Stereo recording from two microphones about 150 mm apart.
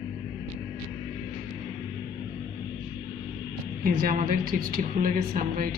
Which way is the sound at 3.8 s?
70° right (ahead or behind).